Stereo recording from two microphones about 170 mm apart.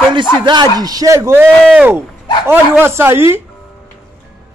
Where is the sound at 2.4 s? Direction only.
10° right (ahead or behind).